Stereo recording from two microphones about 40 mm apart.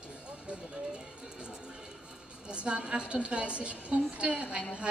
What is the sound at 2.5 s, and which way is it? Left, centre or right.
A woman's voice, right.